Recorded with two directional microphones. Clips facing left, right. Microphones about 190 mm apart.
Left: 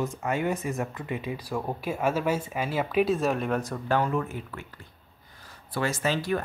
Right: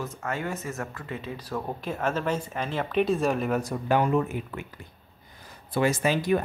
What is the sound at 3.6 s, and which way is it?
Speech, 15° right (ahead or behind).